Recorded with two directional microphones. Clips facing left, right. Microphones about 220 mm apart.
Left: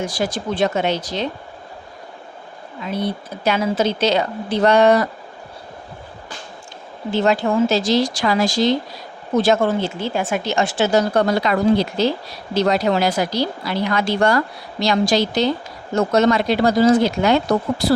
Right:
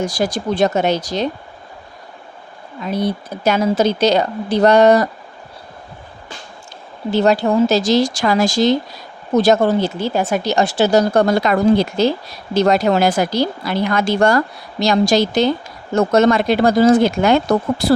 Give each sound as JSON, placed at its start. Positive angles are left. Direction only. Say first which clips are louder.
{"t": 0.0, "sound": "speech", "louder": "right 3 dB", "side_deg": -40}
{"t": 2.8, "sound": "speech", "louder": "right 4 dB", "side_deg": -40}
{"t": 7.1, "sound": "speech", "louder": "right 3 dB", "side_deg": -40}